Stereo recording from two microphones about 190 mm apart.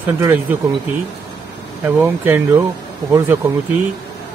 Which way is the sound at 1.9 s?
10° right (ahead or behind).